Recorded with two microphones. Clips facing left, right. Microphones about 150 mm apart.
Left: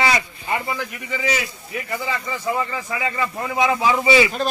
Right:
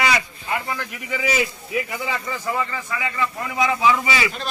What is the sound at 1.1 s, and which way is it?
Speech, 10° right (ahead or behind).